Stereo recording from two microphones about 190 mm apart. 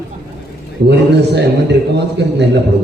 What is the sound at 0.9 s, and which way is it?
Speech, 65° right (ahead or behind).